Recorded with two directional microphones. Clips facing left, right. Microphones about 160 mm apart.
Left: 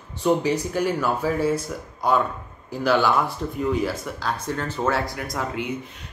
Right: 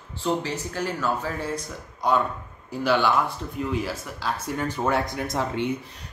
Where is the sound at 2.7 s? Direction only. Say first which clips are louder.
Left 2 dB; centre (ahead or behind).